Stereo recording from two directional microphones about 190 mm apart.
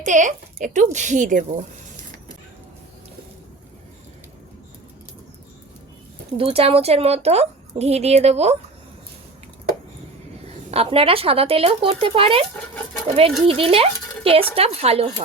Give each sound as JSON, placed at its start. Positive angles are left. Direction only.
{"t": 0.0, "sound": "a woman's voice", "side_deg": -40}
{"t": 6.3, "sound": "a woman's voice", "side_deg": -30}
{"t": 10.7, "sound": "speech", "side_deg": -30}
{"t": 12.5, "sound": "speech", "side_deg": 5}
{"t": 13.5, "sound": "a woman's voice", "side_deg": -30}